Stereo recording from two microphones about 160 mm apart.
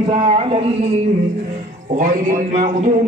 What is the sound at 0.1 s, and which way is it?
Speech, 35° right (ahead or behind).